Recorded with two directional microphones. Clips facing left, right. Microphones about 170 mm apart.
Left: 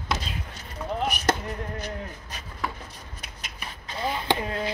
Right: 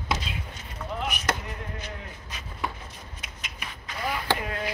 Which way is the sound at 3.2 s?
35° left (ahead or behind).